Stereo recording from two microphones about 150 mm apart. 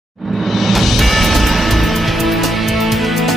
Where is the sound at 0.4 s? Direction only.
Centre (ahead or behind).